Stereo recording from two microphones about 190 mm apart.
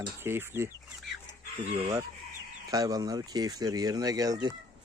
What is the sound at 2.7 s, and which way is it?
Speech, 20° right (ahead or behind).